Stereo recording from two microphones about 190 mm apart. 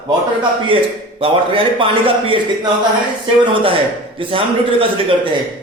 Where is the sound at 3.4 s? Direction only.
25° right (ahead or behind).